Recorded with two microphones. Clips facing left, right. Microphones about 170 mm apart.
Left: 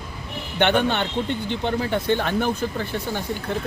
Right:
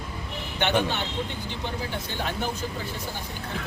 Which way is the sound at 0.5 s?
60° left (ahead or behind).